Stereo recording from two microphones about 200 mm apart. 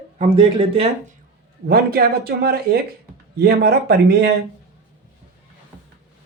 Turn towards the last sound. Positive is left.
turn(degrees=-55)  # may be behind; listen again after turning